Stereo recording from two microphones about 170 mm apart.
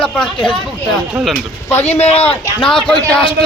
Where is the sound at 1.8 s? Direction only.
40° left (ahead or behind).